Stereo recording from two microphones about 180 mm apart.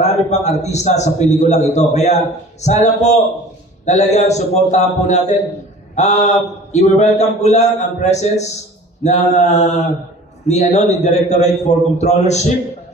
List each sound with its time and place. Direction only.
0.0 s a man's voice: 40° left (ahead or behind)